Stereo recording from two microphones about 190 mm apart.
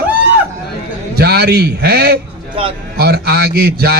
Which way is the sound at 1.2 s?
55° right (ahead or behind).